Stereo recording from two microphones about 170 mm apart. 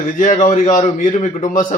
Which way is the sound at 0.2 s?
45° left (ahead or behind).